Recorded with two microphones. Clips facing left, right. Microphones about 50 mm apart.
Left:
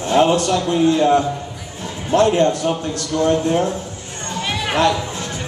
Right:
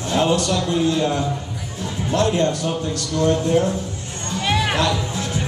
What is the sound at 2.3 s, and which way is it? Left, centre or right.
Speech, left.